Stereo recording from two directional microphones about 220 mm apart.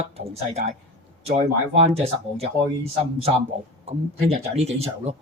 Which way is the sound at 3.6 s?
25° right (ahead or behind).